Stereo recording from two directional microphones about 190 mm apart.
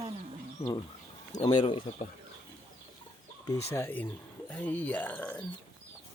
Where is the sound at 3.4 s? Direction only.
15° left (ahead or behind).